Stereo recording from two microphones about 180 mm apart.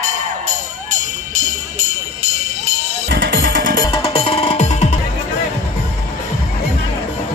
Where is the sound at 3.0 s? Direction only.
70° right (ahead or behind); by 3.8 s 50° right (ahead or behind).